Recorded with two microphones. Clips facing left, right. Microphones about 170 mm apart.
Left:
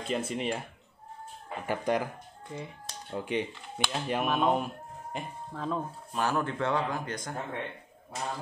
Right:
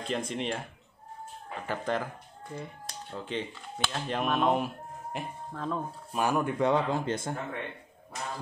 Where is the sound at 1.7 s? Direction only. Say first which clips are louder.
Left 3 dB; 15° left (ahead or behind).